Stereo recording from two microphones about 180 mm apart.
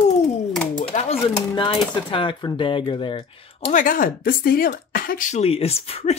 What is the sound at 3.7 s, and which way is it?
Speech, 50° left (ahead or behind).